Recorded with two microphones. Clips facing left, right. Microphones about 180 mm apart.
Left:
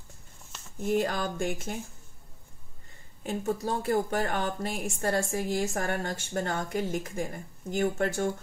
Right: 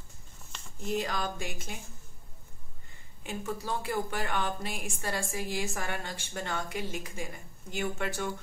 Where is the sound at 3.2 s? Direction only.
40° left (ahead or behind).